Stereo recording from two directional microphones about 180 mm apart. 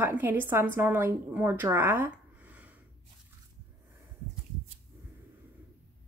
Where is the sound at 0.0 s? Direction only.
10° right (ahead or behind).